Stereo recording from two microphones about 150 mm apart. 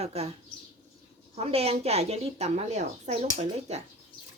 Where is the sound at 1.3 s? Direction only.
45° right (ahead or behind).